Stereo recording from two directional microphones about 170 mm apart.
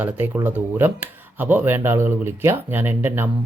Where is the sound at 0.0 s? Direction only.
10° right (ahead or behind).